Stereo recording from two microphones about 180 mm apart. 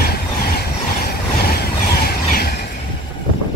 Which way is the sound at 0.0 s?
60° left (ahead or behind).